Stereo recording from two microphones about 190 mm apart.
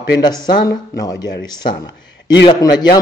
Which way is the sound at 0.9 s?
20° left (ahead or behind).